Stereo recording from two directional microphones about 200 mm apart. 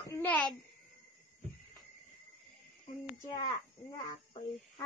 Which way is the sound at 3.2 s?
15° left (ahead or behind).